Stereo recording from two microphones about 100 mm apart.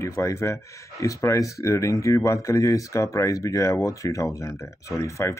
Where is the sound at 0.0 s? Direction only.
30° left (ahead or behind).